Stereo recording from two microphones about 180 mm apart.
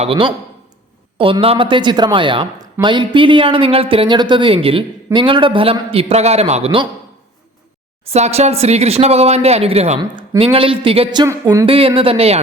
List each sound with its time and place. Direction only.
0.0 s speech: 30° right (ahead or behind)
8.1 s speech: 35° right (ahead or behind); by 11.6 s 20° right (ahead or behind)
11.6 s speech: 30° right (ahead or behind)